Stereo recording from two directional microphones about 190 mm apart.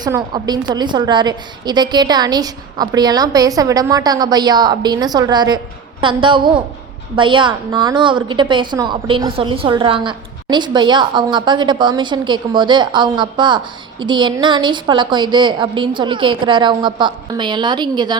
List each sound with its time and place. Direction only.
0.0 s a woman's voice: 20° right (ahead or behind)